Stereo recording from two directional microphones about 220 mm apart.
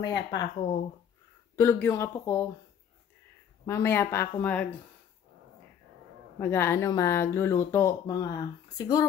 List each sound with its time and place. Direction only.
0.0 s speech: 20° left (ahead or behind)
1.6 s speech: 10° left (ahead or behind)
3.6 s speech: 10° left (ahead or behind)
6.4 s speech: 10° left (ahead or behind)